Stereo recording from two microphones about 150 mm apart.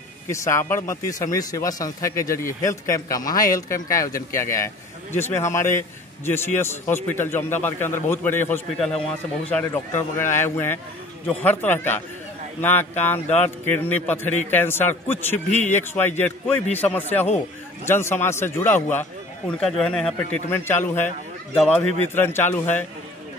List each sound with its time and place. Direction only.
0.3 s a man's voice: 20° left (ahead or behind)
8.7 s a man's voice: 5° left (ahead or behind)